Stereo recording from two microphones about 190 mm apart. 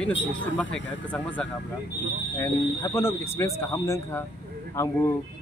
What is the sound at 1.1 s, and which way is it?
Speech, 5° left (ahead or behind).